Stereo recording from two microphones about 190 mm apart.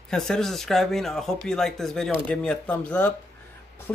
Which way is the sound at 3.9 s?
5° left (ahead or behind).